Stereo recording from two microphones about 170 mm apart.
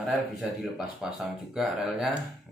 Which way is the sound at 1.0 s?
5° right (ahead or behind).